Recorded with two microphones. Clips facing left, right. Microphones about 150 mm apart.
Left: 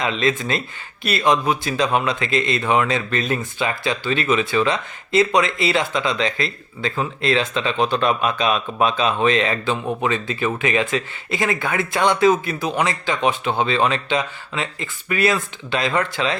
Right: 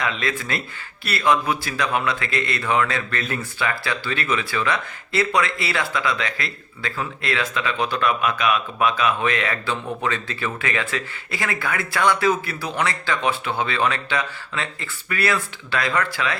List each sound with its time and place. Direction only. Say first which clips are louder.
0.0 s speech: left 5 dB; 20° left (ahead or behind)